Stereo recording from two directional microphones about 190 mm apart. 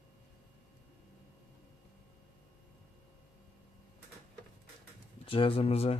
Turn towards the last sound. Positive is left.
turn(degrees=35)  # may be behind; listen again after turning